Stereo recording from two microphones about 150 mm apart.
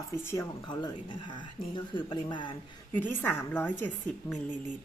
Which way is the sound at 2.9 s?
10° left (ahead or behind).